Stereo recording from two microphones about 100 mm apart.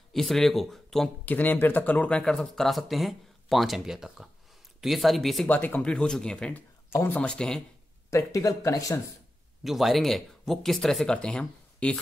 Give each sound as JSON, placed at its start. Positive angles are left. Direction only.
{"t": 0.1, "sound": "speech", "side_deg": 5}
{"t": 1.2, "sound": "speech", "side_deg": 15}
{"t": 5.5, "sound": "speech", "side_deg": 15}
{"t": 6.9, "sound": "speech", "side_deg": 20}
{"t": 7.2, "sound": "speech", "side_deg": 10}
{"t": 8.1, "sound": "speech", "side_deg": 30}
{"t": 9.6, "sound": "speech", "side_deg": 0}